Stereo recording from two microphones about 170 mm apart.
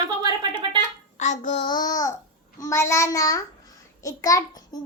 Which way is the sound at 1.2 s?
45° left (ahead or behind).